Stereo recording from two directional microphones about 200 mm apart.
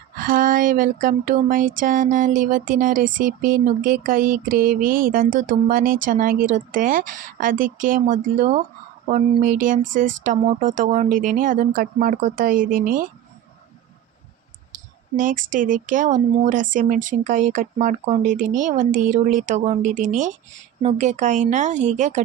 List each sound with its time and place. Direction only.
0.2 s speech: 45° right (ahead or behind)
14.7 s speech: 40° right (ahead or behind)